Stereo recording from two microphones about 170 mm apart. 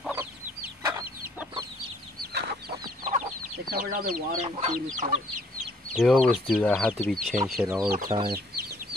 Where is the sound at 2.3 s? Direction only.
70° right (ahead or behind).